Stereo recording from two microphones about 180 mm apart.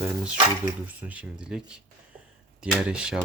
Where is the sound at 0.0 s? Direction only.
5° right (ahead or behind).